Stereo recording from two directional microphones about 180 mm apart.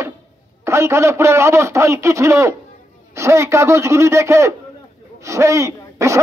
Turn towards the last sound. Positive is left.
turn(degrees=-15)  # may be behind; listen again after turning